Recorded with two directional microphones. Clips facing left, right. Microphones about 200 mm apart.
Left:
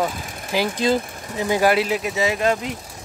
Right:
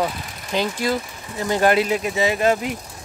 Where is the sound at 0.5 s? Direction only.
15° left (ahead or behind).